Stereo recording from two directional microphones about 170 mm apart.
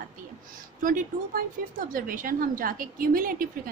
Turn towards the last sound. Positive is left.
turn(degrees=-55)  # may be behind; listen again after turning